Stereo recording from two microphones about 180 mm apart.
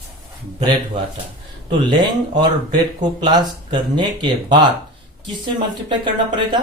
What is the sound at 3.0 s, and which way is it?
Speech, 25° right (ahead or behind).